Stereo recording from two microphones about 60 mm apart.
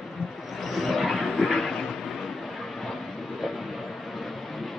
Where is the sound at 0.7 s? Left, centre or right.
Centre.